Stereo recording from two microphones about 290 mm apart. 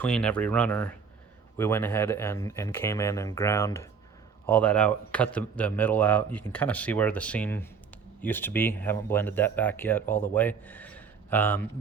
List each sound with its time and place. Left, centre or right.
0.0 s a man's voice: centre